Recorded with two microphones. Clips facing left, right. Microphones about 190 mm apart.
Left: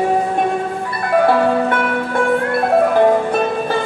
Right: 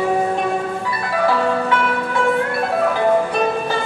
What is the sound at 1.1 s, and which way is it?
Music, 55° left (ahead or behind).